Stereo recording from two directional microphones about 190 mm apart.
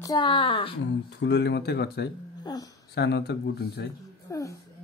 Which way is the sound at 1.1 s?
65° left (ahead or behind).